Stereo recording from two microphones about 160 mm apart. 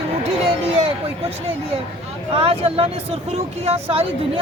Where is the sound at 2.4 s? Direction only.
35° right (ahead or behind).